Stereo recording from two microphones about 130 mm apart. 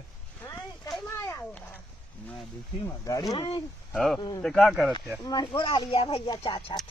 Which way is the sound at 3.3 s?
45° left (ahead or behind).